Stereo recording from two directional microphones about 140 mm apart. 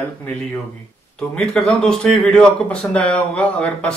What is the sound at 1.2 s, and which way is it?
Speech, 5° left (ahead or behind).